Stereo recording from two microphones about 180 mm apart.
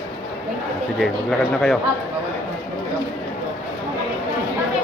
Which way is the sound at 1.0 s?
Centre (ahead or behind).